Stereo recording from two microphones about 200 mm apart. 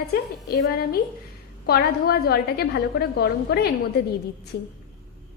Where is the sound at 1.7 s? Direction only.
50° left (ahead or behind).